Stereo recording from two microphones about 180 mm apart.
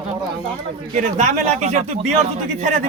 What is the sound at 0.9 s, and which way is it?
Speech, 40° right (ahead or behind).